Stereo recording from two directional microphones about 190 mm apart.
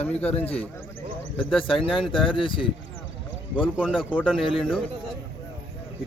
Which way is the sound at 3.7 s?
5° right (ahead or behind).